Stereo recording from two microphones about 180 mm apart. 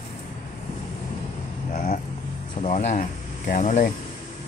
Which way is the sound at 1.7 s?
50° left (ahead or behind).